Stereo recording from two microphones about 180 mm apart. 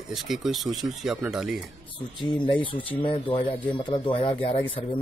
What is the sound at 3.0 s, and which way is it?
Speech, 30° left (ahead or behind).